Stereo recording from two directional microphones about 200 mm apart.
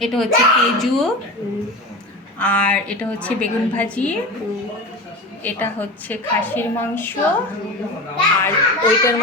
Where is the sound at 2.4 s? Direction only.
5° left (ahead or behind).